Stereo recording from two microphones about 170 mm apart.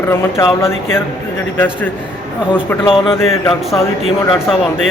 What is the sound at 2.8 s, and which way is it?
Speech, 30° left (ahead or behind).